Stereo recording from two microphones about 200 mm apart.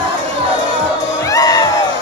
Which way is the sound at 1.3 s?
15° left (ahead or behind).